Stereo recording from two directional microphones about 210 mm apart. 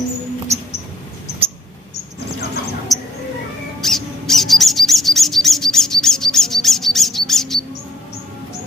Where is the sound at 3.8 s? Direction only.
Centre (ahead or behind).